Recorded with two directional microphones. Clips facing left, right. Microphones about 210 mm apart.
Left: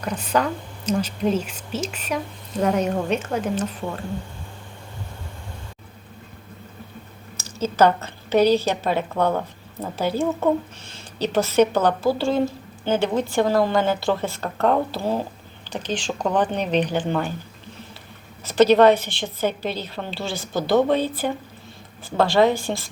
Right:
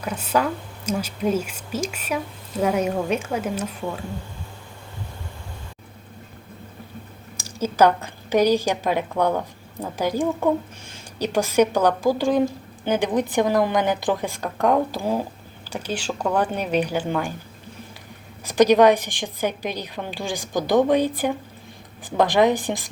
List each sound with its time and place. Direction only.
0.0 s a woman's voice: 5° right (ahead or behind)
7.3 s a woman's voice: 10° right (ahead or behind)
18.4 s a woman's voice: 15° right (ahead or behind)